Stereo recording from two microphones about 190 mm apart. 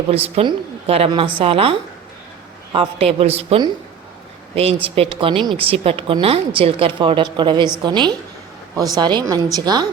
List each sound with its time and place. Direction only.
0.1 s a woman's voice: 30° right (ahead or behind)
2.7 s a woman's voice: 30° right (ahead or behind)